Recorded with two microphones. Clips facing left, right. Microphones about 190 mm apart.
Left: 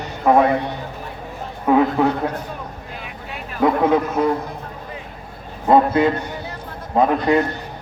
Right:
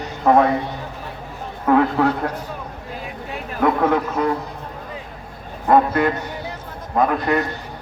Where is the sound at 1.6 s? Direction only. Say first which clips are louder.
Left 1 dB; 10° left (ahead or behind).